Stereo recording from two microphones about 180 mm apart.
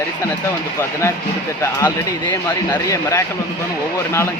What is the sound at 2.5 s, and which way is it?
Speech, 15° left (ahead or behind).